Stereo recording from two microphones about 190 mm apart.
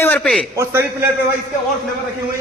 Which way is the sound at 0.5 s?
15° right (ahead or behind).